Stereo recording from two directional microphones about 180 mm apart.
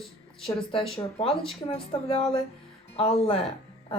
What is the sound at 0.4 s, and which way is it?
Speech, 30° left (ahead or behind).